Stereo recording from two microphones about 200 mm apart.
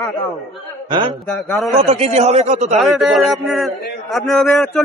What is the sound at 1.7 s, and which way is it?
A man's voice, 30° right (ahead or behind).